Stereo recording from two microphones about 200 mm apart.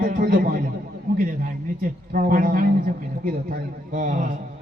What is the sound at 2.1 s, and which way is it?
Speech, 45° right (ahead or behind).